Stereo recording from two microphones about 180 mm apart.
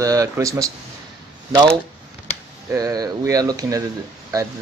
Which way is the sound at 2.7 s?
20° right (ahead or behind).